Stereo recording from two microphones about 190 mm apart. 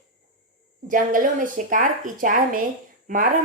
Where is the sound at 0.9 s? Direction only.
45° right (ahead or behind).